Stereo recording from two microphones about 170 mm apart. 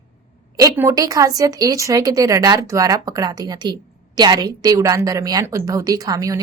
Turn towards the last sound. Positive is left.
turn(degrees=-20)  # may be behind; listen again after turning